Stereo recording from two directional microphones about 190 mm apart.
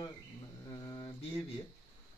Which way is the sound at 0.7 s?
20° left (ahead or behind).